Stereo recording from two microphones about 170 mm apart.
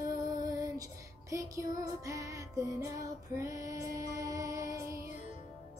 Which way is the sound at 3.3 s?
20° right (ahead or behind).